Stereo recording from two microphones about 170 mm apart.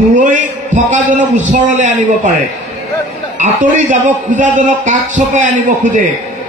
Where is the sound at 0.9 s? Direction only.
45° right (ahead or behind).